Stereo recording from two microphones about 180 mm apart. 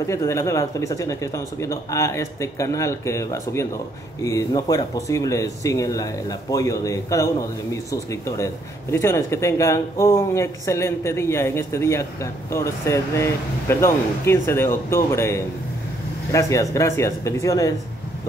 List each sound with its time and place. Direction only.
0.0 s speech: 15° left (ahead or behind)